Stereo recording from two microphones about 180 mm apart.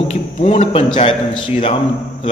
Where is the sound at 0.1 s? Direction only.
35° left (ahead or behind).